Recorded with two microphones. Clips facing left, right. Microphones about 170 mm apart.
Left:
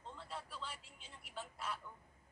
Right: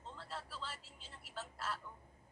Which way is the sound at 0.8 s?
55° left (ahead or behind).